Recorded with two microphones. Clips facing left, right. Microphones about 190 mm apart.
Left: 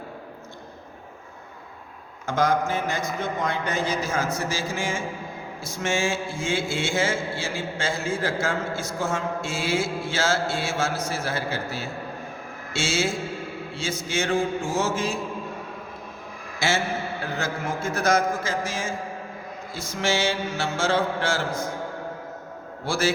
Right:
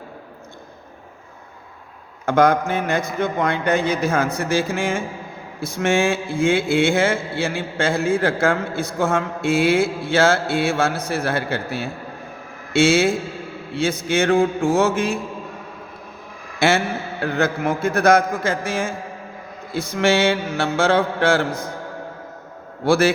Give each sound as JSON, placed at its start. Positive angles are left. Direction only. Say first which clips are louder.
{"t": 2.2, "sound": "mantra", "louder": "right 6 dB", "side_deg": -60}
{"t": 16.6, "sound": "a man's voice", "louder": "right 7 dB", "side_deg": -60}
{"t": 17.3, "sound": "mantra", "louder": "right 10 dB", "side_deg": -60}
{"t": 22.8, "sound": "mantra", "louder": "right 8 dB", "side_deg": -60}